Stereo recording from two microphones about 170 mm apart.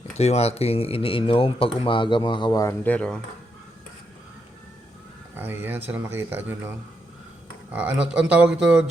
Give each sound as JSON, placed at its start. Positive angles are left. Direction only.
{"t": 0.1, "sound": "speech", "side_deg": 40}
{"t": 5.4, "sound": "speech", "side_deg": -10}